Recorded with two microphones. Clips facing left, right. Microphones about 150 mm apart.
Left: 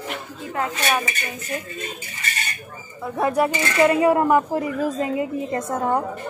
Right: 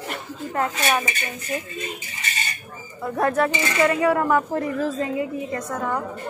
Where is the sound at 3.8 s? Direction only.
20° left (ahead or behind).